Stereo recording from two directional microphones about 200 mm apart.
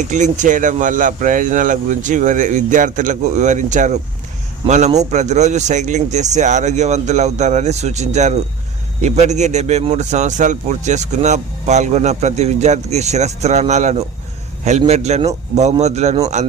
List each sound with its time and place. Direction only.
0.1 s a man's voice: 40° right (ahead or behind)